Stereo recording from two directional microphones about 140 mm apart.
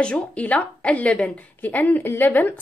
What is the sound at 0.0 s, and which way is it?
A woman's voice, 10° left (ahead or behind).